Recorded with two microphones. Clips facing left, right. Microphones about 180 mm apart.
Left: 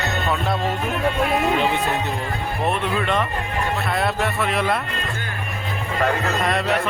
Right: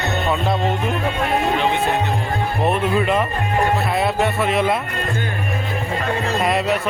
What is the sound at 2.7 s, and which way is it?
Speech, 5° right (ahead or behind).